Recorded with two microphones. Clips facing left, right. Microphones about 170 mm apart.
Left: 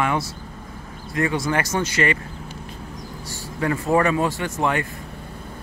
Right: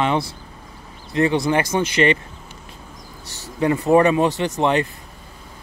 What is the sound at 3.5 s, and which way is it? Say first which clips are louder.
Speech: right 5 dB; 20° right (ahead or behind).